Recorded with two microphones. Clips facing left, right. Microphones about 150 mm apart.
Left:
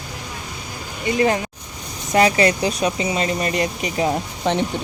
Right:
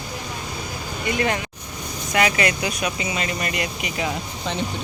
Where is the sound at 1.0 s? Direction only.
30° left (ahead or behind).